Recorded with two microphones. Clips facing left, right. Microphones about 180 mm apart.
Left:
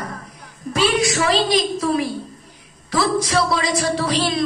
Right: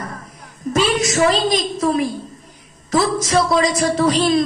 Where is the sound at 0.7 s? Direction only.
45° right (ahead or behind).